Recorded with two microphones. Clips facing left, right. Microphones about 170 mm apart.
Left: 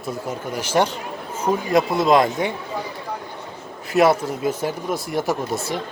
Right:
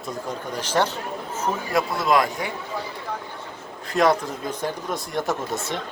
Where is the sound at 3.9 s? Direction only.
5° left (ahead or behind).